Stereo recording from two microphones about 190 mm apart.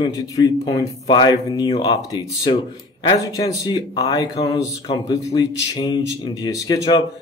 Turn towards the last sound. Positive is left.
turn(degrees=20)  # may be behind; listen again after turning